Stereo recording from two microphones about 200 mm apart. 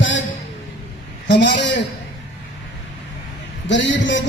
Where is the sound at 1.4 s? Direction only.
60° left (ahead or behind).